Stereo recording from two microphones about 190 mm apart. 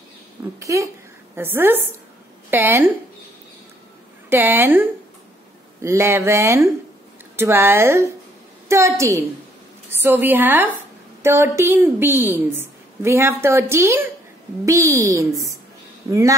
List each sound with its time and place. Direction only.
0.6 s a woman's voice: 15° right (ahead or behind)
4.3 s a woman's voice: 10° right (ahead or behind)